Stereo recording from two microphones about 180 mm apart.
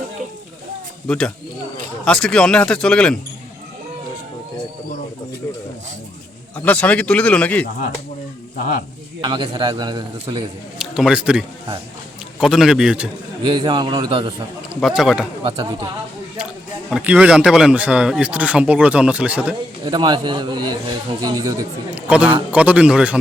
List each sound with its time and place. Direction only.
1.0 s speech: 5° left (ahead or behind)
6.7 s a man's voice: 10° left (ahead or behind)
9.2 s a man's voice: 25° right (ahead or behind)
10.8 s a man's voice: 5° right (ahead or behind)
13.5 s a man's voice: 25° right (ahead or behind)
14.8 s speech: centre (ahead or behind)
15.4 s a man's voice: 30° right (ahead or behind)
16.9 s a man's voice: 5° right (ahead or behind)
19.8 s a man's voice: 25° right (ahead or behind)
21.9 s a man's voice: 5° right (ahead or behind)